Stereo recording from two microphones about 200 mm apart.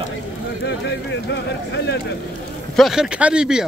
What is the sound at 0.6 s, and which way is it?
Speech, 60° left (ahead or behind).